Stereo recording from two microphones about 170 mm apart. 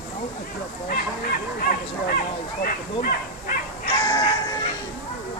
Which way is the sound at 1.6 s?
55° left (ahead or behind).